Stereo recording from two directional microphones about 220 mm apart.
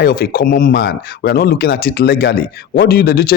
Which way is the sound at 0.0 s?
40° left (ahead or behind).